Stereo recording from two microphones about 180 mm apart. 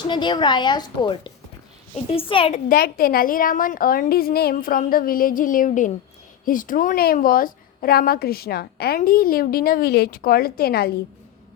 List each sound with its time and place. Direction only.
0.1 s a woman's voice: 25° left (ahead or behind)
2.6 s a woman's voice: 55° left (ahead or behind)